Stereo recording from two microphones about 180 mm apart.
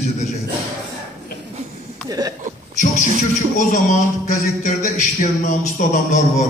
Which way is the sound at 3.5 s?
40° left (ahead or behind).